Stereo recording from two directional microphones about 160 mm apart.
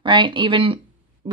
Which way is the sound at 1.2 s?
30° right (ahead or behind).